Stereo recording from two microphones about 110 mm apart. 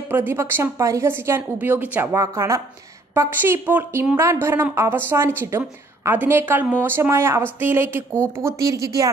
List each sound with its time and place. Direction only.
0.1 s a woman's voice: 20° right (ahead or behind)
2.1 s a woman's voice: 25° right (ahead or behind)